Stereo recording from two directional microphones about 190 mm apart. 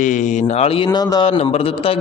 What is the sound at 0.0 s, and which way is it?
Speech, 40° left (ahead or behind).